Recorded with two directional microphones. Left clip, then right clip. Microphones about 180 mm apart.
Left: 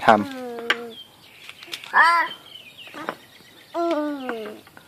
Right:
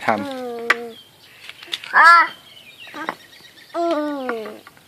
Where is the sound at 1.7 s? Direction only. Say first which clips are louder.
Right 6 dB; 5° left (ahead or behind).